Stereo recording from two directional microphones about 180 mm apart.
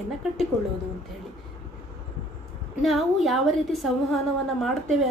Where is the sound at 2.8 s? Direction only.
Centre (ahead or behind).